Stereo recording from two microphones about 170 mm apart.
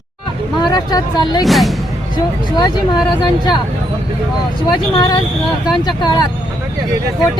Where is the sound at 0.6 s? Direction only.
25° left (ahead or behind).